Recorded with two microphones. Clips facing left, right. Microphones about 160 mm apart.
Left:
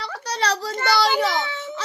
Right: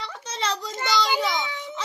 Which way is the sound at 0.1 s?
70° left (ahead or behind).